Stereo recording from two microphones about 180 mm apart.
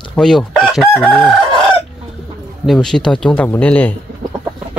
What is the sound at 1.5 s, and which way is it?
Chicken, 25° right (ahead or behind).